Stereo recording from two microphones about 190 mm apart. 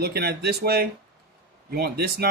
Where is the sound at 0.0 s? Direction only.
55° right (ahead or behind).